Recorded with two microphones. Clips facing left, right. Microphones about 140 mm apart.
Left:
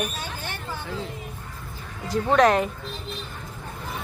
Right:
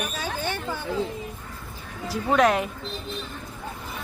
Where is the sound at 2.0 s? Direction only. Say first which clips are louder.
Left 2 dB; 5° right (ahead or behind).